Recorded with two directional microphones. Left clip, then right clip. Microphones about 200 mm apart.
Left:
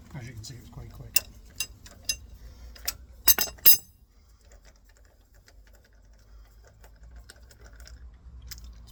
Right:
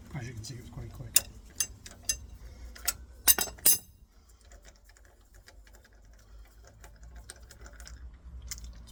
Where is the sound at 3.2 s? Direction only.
25° left (ahead or behind).